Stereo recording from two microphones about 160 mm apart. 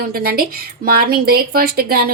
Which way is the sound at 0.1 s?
70° right (ahead or behind).